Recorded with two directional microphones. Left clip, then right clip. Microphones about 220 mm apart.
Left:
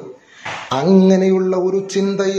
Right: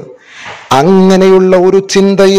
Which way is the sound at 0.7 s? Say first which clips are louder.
Right 8 dB; 45° right (ahead or behind).